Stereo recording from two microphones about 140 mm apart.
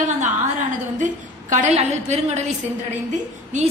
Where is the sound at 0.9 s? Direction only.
65° right (ahead or behind).